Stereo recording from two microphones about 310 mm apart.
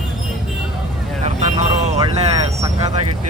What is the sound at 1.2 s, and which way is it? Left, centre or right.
Vehicle, right.